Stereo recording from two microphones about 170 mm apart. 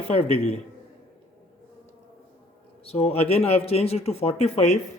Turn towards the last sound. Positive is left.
turn(degrees=40)  # may be behind; listen again after turning